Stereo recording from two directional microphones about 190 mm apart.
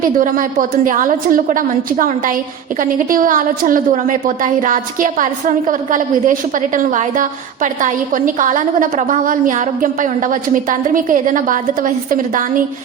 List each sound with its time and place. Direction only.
0.0 s a woman's voice: 45° right (ahead or behind)